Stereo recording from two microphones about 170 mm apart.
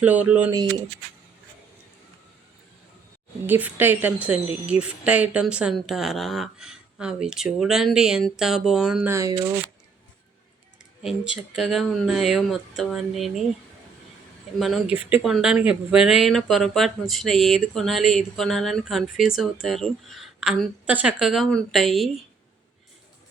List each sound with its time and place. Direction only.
0.0 s speech: 10° right (ahead or behind)
3.4 s a woman's voice: 10° right (ahead or behind)
9.0 s speech: 15° right (ahead or behind)
11.0 s a woman's voice: centre (ahead or behind)
14.6 s a woman's voice: 5° right (ahead or behind)